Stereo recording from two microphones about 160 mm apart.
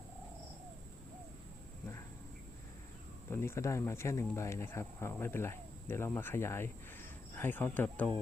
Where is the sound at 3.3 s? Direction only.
15° left (ahead or behind).